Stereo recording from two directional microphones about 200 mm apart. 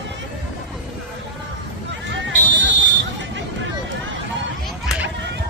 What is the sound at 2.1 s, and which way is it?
Fire alarm, 65° right (ahead or behind).